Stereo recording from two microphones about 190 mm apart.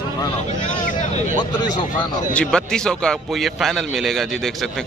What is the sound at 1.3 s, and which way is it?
Speech, 25° left (ahead or behind).